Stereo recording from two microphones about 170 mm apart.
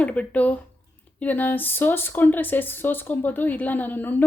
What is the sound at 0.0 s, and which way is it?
Speech, 10° left (ahead or behind).